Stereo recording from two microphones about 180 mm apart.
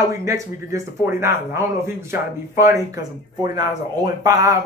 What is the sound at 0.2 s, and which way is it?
Speech, 15° right (ahead or behind).